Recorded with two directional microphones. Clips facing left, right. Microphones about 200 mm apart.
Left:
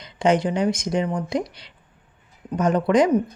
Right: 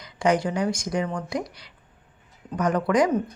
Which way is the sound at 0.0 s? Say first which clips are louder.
Left 3 dB; 25° left (ahead or behind).